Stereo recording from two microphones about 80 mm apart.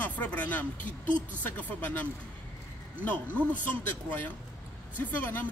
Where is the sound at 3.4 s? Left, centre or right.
Centre.